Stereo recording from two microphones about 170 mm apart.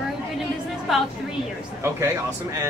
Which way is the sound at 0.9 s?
Centre (ahead or behind).